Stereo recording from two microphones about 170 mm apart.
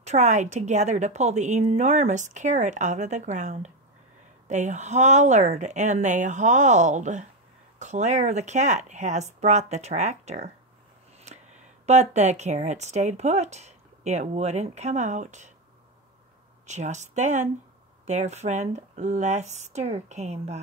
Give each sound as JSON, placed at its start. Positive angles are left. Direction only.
{"t": 0.0, "sound": "a woman's voice", "side_deg": -40}
{"t": 11.8, "sound": "speech", "side_deg": -40}
{"t": 16.6, "sound": "a woman's voice", "side_deg": -45}